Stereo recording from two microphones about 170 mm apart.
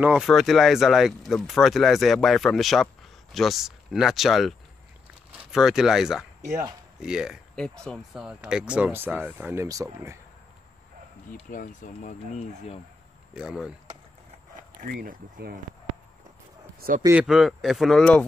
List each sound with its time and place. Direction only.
0.0 s speech: 5° right (ahead or behind)
11.5 s speech: 50° left (ahead or behind)
13.3 s speech: 5° right (ahead or behind)
15.0 s speech: 55° right (ahead or behind)
17.1 s speech: 5° right (ahead or behind)